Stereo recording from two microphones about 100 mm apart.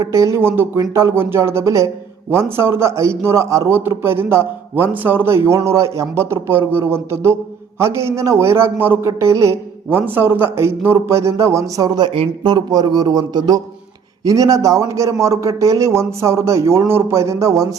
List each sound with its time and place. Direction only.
0.0 s a man's voice: 30° right (ahead or behind)
12.4 s a man's voice: 50° right (ahead or behind)